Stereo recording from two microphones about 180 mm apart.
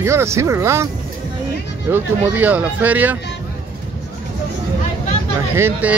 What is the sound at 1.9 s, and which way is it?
Speech, 10° right (ahead or behind).